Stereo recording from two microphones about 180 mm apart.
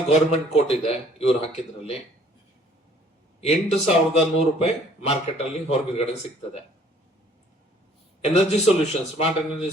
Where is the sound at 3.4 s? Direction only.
35° left (ahead or behind).